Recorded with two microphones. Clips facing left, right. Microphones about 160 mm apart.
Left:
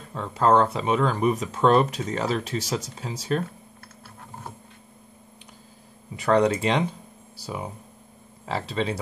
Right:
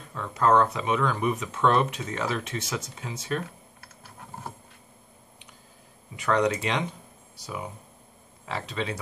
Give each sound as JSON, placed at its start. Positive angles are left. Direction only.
{"t": 0.1, "sound": "speech", "side_deg": 30}
{"t": 6.1, "sound": "speech", "side_deg": 35}